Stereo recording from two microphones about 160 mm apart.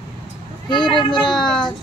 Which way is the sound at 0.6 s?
30° left (ahead or behind).